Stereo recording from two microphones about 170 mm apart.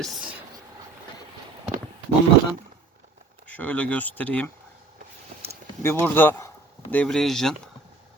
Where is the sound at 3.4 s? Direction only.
10° left (ahead or behind).